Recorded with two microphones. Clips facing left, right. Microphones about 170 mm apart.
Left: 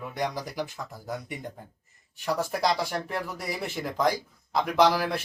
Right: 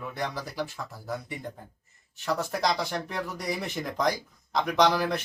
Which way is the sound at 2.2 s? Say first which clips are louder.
Left 1 dB; 10° left (ahead or behind).